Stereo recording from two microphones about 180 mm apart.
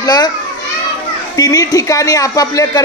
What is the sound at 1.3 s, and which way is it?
Speech, 20° left (ahead or behind).